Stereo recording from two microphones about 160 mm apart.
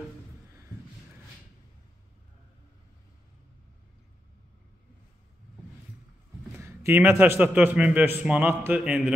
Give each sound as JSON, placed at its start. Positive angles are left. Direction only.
{"t": 6.6, "sound": "a man's voice", "side_deg": -15}